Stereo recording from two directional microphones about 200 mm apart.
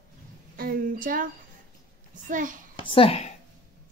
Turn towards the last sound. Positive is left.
turn(degrees=30)  # may be behind; listen again after turning